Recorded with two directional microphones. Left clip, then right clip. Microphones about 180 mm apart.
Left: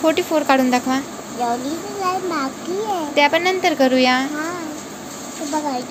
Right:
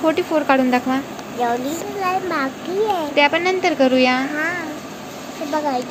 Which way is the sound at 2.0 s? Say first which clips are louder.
Right 1 dB; 15° right (ahead or behind).